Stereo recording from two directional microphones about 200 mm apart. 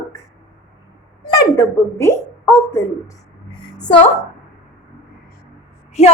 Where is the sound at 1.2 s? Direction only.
15° left (ahead or behind).